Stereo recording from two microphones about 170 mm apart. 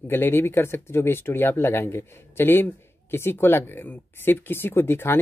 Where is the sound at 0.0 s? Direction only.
15° left (ahead or behind).